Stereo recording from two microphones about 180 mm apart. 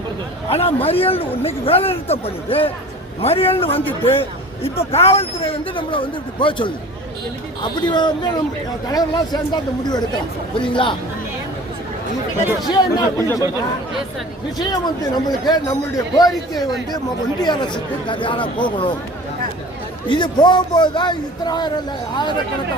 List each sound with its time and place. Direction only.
0.4 s speech: 30° left (ahead or behind)
12.6 s speech: 20° left (ahead or behind)
14.6 s speech: 25° left (ahead or behind)
20.1 s speech: 25° left (ahead or behind)